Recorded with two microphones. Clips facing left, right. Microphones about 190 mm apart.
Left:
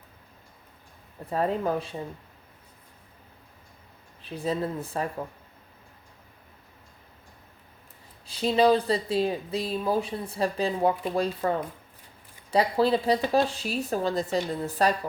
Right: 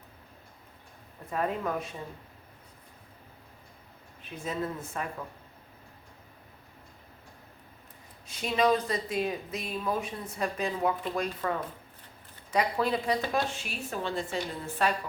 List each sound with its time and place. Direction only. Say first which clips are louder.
1.3 s speech: left 4 dB; 30° left (ahead or behind)
4.2 s speech: left 5 dB; 35° left (ahead or behind)
8.3 s speech: left 5 dB; 30° left (ahead or behind)